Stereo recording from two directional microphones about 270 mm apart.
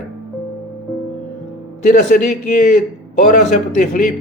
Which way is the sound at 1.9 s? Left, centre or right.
Left.